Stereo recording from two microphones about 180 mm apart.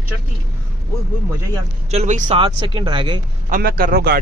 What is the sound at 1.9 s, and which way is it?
Speech, 40° right (ahead or behind).